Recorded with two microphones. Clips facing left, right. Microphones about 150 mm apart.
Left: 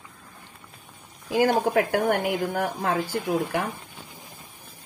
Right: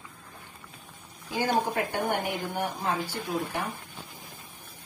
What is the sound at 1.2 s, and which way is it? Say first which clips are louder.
A woman's voice: left 6 dB; 80° left.